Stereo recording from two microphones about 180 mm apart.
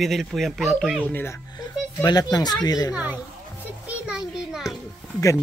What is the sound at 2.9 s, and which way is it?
Speech, 10° right (ahead or behind).